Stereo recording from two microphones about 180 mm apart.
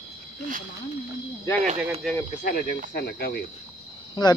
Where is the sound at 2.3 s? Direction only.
50° left (ahead or behind).